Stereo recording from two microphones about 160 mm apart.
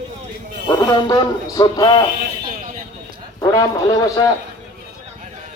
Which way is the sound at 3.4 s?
25° left (ahead or behind).